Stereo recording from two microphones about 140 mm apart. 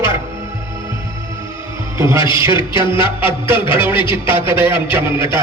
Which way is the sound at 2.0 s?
20° right (ahead or behind).